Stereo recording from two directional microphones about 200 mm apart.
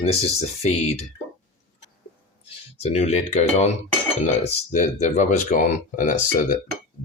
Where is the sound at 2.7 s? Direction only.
35° left (ahead or behind).